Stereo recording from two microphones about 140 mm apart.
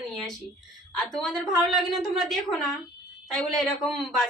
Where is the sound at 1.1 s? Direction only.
5° left (ahead or behind).